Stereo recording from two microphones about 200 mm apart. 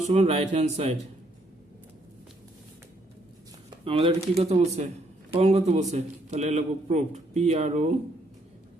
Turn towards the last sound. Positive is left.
turn(degrees=-35)  # may be behind; listen again after turning